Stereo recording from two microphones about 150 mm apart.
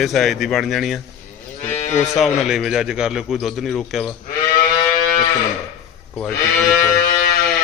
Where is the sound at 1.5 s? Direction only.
50° left (ahead or behind).